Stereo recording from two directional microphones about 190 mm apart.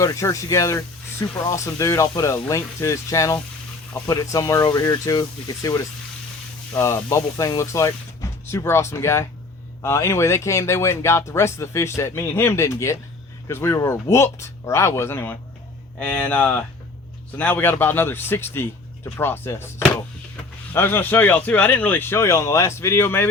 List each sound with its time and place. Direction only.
0.0 s speech: 15° left (ahead or behind)